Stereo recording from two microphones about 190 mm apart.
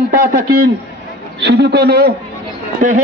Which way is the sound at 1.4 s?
65° right (ahead or behind).